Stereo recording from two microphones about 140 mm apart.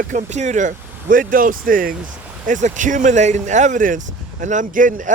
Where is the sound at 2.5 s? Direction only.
65° right (ahead or behind).